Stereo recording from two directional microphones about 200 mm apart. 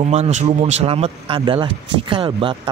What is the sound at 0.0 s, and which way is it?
Speech, 35° right (ahead or behind).